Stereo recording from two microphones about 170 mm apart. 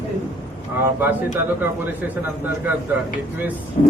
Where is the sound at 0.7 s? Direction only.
10° right (ahead or behind).